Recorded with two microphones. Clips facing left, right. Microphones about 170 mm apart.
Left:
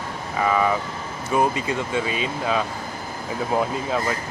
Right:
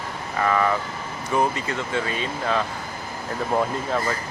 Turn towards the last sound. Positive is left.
turn(degrees=5)  # may be behind; listen again after turning